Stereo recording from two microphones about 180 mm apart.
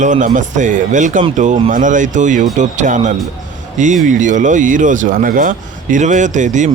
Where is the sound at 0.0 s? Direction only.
45° right (ahead or behind).